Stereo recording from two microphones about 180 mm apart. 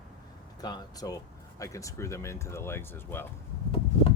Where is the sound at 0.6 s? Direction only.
20° left (ahead or behind).